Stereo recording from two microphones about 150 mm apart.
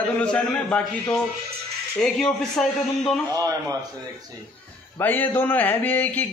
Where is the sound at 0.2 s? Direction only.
5° left (ahead or behind).